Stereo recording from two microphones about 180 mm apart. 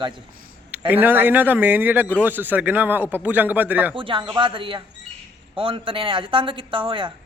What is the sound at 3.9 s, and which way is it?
A man's voice, 30° right (ahead or behind).